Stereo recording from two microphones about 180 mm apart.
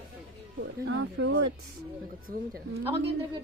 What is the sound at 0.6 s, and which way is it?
Speech, 90° right.